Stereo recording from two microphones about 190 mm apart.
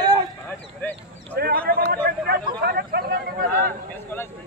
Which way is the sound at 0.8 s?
10° left (ahead or behind).